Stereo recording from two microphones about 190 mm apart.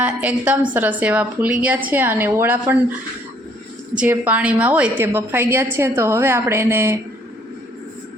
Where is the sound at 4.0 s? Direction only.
10° right (ahead or behind).